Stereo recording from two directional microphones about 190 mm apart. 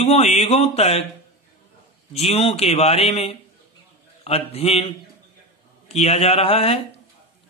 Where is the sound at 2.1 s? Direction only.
35° left (ahead or behind).